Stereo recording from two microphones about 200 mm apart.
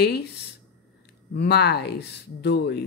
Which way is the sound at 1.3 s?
55° left (ahead or behind).